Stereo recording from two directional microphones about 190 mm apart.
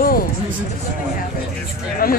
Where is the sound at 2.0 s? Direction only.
50° left (ahead or behind).